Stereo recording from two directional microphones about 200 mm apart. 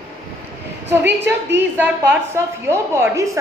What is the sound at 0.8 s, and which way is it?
Speech, 10° right (ahead or behind).